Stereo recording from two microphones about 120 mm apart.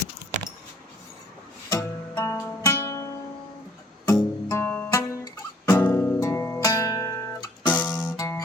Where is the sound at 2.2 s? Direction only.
25° left (ahead or behind).